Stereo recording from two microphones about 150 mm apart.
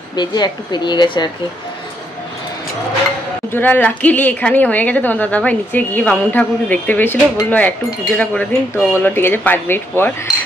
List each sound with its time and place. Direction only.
0.1 s speech: 30° left (ahead or behind)
3.5 s a woman's voice: 10° left (ahead or behind)